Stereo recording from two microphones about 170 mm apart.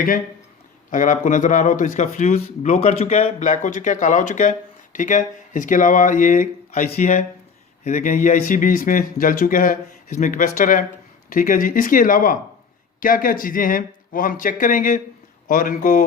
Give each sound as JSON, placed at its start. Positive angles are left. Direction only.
{"t": 0.9, "sound": "speech", "side_deg": 50}